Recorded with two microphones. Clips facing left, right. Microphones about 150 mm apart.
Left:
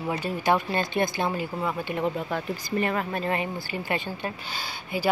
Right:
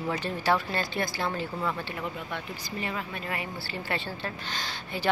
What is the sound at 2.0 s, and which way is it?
Speech, 40° left (ahead or behind).